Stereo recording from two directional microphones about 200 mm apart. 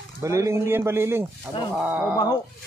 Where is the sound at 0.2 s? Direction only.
15° right (ahead or behind).